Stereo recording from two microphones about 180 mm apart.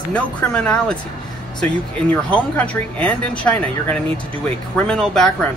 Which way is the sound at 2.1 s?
5° left (ahead or behind).